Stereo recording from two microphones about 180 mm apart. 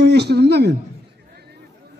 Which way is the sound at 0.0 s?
65° right (ahead or behind).